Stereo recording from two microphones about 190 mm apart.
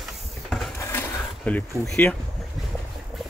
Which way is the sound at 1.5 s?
5° left (ahead or behind).